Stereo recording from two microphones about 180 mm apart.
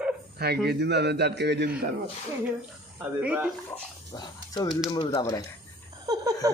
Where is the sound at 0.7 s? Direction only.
70° right (ahead or behind).